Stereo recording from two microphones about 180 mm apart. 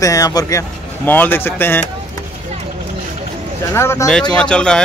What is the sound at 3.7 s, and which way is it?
A man's voice, 15° left (ahead or behind).